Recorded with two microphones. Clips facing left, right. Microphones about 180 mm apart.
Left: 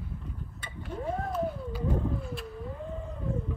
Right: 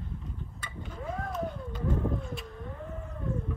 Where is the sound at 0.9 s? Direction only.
30° left (ahead or behind).